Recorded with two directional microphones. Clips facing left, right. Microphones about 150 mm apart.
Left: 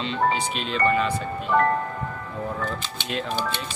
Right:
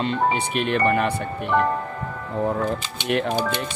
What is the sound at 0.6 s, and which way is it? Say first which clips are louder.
Speech: right 5 dB; 60° right (ahead or behind).